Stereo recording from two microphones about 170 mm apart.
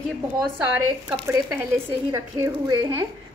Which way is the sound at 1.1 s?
10° right (ahead or behind).